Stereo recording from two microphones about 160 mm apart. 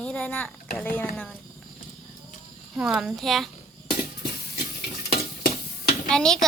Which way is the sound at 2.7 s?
5° right (ahead or behind).